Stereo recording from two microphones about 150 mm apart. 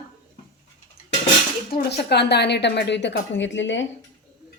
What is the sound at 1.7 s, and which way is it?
Speech, 90° left.